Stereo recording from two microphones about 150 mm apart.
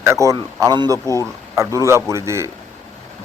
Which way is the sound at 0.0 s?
20° right (ahead or behind).